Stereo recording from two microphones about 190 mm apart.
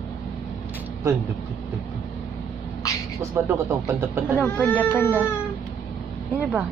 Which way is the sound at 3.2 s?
15° right (ahead or behind).